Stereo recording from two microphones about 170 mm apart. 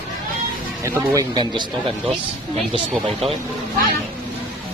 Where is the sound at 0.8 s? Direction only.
25° right (ahead or behind).